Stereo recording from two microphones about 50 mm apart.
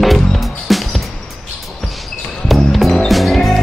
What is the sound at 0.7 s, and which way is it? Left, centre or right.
Music, centre.